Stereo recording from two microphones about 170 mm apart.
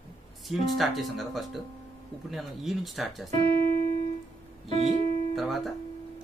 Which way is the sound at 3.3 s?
35° right (ahead or behind).